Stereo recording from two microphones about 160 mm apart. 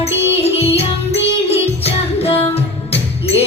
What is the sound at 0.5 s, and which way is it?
Music, 40° left (ahead or behind).